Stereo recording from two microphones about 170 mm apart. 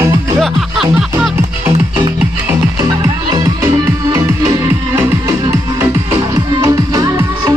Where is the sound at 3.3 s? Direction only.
20° right (ahead or behind).